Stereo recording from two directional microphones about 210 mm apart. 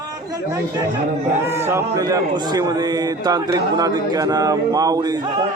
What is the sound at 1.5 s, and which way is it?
Speech, 10° right (ahead or behind).